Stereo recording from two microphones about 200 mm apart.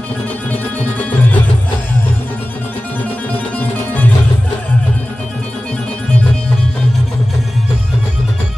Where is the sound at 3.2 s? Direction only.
5° left (ahead or behind).